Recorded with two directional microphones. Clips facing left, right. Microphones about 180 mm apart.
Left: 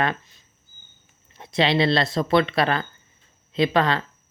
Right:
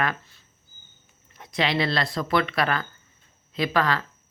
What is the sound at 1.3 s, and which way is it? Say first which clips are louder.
Speech: left 4 dB; 25° left (ahead or behind).